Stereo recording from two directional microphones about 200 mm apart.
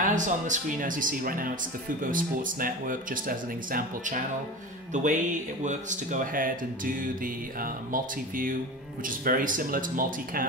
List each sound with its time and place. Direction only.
0.0 s speech: 40° right (ahead or behind)